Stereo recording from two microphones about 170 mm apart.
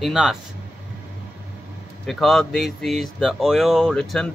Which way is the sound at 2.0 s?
Centre (ahead or behind).